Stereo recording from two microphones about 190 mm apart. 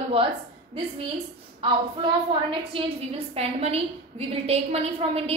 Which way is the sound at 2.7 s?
30° right (ahead or behind).